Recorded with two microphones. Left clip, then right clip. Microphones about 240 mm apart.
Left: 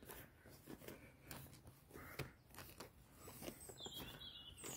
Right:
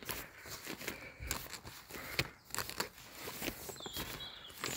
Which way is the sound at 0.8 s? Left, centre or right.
Right.